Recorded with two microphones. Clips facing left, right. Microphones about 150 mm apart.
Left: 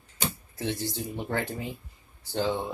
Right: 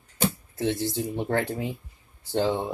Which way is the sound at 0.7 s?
20° right (ahead or behind).